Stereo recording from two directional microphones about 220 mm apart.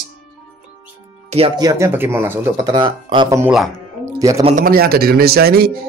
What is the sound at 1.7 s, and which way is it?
Speech, 10° right (ahead or behind).